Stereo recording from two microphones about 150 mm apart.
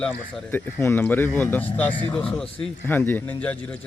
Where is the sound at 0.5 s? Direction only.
15° left (ahead or behind).